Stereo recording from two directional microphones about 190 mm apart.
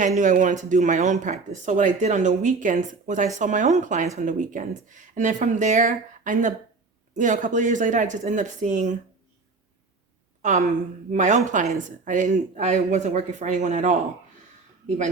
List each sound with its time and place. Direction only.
0.0 s speech: 40° right (ahead or behind)
10.4 s speech: 40° right (ahead or behind)